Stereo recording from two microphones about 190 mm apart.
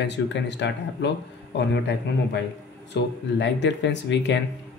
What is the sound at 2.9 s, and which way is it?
Speech, 70° left (ahead or behind).